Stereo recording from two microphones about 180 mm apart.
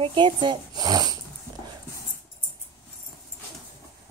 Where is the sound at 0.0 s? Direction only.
25° right (ahead or behind).